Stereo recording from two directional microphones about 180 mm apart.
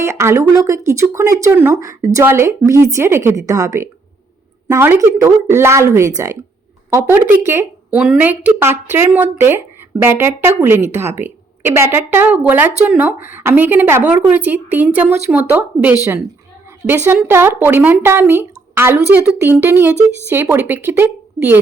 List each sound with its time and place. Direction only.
0.0 s speech: 15° right (ahead or behind)